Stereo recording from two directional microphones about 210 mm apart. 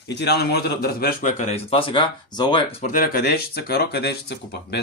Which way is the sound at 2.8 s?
45° left (ahead or behind).